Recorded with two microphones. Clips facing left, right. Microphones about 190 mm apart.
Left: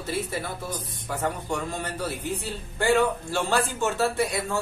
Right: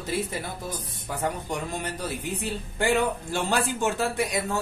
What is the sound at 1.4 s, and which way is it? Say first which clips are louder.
A man's voice: left 1 dB; 15° right (ahead or behind).